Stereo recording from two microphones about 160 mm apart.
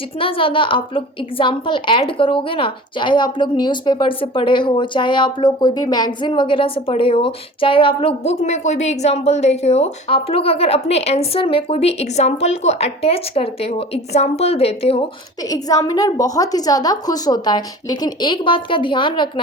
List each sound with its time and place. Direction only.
0.2 s a woman's voice: 35° left (ahead or behind)
15.4 s a woman's voice: 25° left (ahead or behind)